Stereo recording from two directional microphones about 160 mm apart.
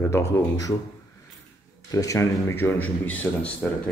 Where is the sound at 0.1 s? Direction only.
20° left (ahead or behind).